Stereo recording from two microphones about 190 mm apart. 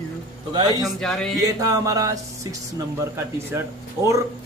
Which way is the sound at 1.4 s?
20° right (ahead or behind).